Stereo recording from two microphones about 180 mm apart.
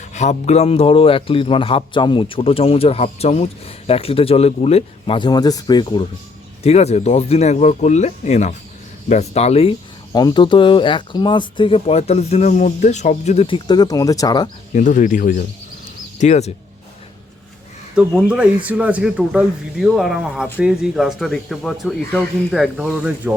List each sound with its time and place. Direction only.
0.1 s a man's voice: 40° left (ahead or behind); by 6.1 s 25° left (ahead or behind)
6.6 s a man's voice: 35° left (ahead or behind)
13.7 s speech: 20° left (ahead or behind)
14.8 s speech: 45° left (ahead or behind)
16.1 s a man's voice: 40° left (ahead or behind)
18.3 s speech: 5° right (ahead or behind)